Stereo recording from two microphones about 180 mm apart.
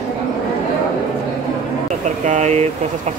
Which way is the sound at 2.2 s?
40° right (ahead or behind).